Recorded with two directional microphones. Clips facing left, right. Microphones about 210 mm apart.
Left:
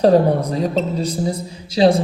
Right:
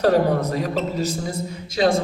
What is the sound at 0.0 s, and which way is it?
A man's voice, 30° left (ahead or behind).